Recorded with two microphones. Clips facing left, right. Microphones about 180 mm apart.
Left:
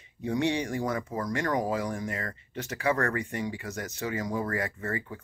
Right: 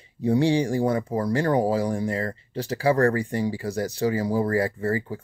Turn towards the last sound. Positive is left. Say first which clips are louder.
# right 8 dB
turn(degrees=-30)  # may be behind; listen again after turning